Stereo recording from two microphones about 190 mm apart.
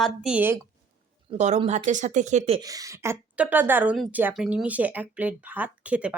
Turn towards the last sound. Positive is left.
turn(degrees=-5)  # may be behind; listen again after turning